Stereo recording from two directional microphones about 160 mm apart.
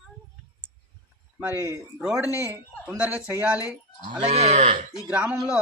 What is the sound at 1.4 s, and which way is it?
Speech, 10° right (ahead or behind).